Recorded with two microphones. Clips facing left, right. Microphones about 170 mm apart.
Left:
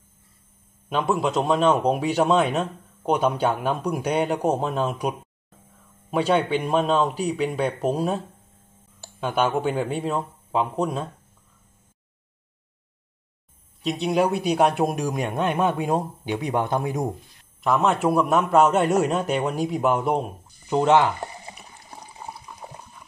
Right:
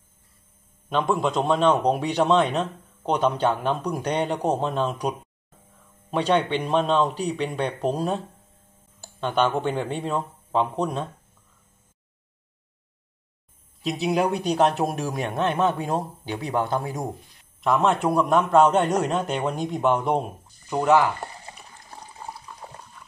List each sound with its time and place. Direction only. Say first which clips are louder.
0.8 s a man's voice: even; 5° left (ahead or behind)
9.2 s a man's voice: even; 10° left (ahead or behind)
13.8 s a man's voice: left 1 dB; centre (ahead or behind); by 17.1 s 20° left (ahead or behind)
17.6 s a man's voice: even; centre (ahead or behind)
20.7 s speech: left 1 dB; 25° left (ahead or behind)
21.5 s water: left 1 dB; 15° left (ahead or behind)